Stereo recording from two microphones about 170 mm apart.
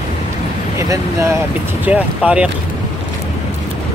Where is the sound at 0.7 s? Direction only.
15° right (ahead or behind).